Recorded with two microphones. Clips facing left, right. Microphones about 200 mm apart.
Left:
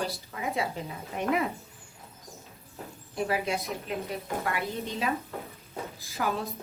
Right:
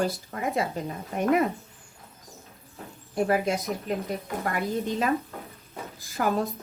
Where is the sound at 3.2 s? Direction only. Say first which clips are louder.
Right 4 dB; 50° right (ahead or behind).